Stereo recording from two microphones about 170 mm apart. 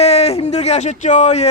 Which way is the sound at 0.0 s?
35° left (ahead or behind).